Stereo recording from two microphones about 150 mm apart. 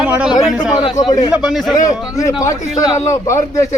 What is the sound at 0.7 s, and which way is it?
Speech, 30° left (ahead or behind).